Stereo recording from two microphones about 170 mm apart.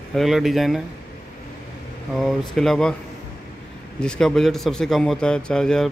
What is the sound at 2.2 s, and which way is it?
Speech, centre (ahead or behind).